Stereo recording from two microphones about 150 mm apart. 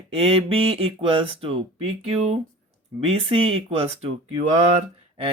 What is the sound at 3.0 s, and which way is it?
Mantra, 40° right (ahead or behind).